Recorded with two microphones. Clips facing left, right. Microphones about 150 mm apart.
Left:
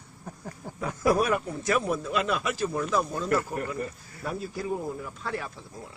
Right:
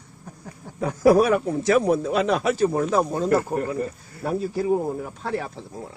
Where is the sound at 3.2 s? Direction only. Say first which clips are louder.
Right 6 dB; 35° right (ahead or behind).